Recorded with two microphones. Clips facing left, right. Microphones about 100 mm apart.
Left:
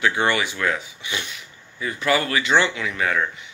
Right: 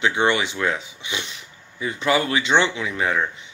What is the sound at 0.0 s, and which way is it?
Speech, 20° right (ahead or behind).